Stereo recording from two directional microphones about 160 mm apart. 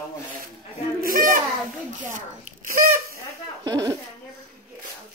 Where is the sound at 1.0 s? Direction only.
60° right (ahead or behind).